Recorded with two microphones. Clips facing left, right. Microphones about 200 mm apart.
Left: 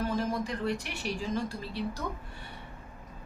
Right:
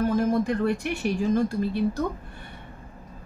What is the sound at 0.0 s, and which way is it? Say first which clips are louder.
Speech: right 8 dB; 50° right (ahead or behind).